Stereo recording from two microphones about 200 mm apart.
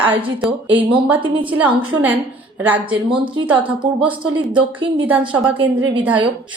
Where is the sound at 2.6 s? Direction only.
10° right (ahead or behind).